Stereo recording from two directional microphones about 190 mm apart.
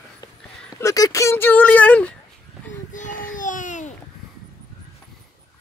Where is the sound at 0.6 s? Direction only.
15° left (ahead or behind).